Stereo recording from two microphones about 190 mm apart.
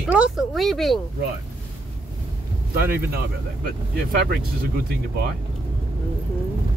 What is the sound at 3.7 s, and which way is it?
Speech, 60° right (ahead or behind).